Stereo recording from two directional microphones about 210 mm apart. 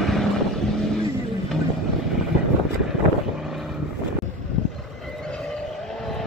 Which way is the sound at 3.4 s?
Centre (ahead or behind).